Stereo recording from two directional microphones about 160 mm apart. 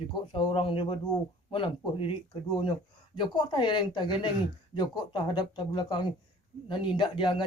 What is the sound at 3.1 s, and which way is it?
Speech, 30° left (ahead or behind).